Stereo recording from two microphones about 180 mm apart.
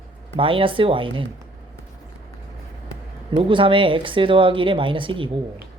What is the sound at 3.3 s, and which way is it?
Speech, 30° right (ahead or behind).